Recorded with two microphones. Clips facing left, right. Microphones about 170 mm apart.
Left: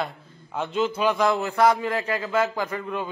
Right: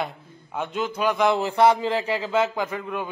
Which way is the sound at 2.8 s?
10° right (ahead or behind).